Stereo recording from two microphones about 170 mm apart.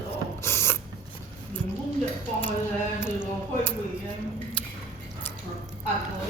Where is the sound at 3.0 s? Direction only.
15° left (ahead or behind).